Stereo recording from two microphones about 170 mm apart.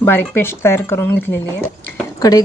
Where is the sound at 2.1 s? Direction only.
20° left (ahead or behind).